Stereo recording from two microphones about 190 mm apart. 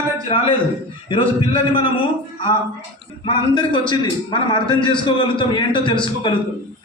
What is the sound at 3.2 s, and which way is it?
A man's voice, 25° left (ahead or behind).